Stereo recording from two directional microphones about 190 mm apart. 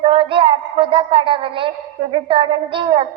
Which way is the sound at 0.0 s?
25° right (ahead or behind).